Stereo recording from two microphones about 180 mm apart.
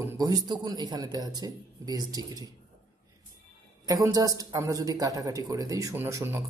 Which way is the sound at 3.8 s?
20° right (ahead or behind).